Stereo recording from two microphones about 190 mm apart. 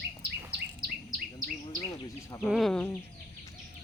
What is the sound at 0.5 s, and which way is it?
Bird vocalization, 55° right (ahead or behind).